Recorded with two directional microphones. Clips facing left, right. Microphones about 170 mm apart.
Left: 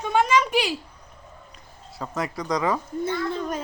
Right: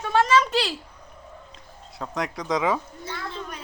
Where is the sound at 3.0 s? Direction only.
50° left (ahead or behind).